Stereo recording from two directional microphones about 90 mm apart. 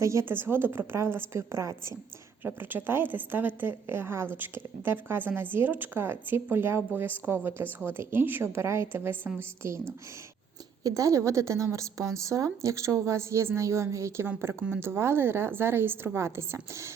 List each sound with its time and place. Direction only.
0.0 s a woman's voice: 35° right (ahead or behind)